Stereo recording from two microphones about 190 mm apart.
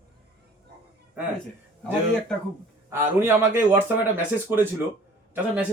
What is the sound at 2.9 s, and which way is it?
A man's voice, 10° right (ahead or behind).